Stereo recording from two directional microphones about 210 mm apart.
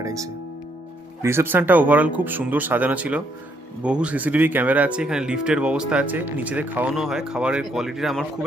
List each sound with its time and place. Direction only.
0.0 s speech: 15° right (ahead or behind); by 8.4 s centre (ahead or behind)